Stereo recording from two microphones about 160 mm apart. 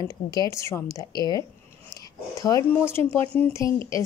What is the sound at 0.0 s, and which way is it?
Speech, 25° left (ahead or behind).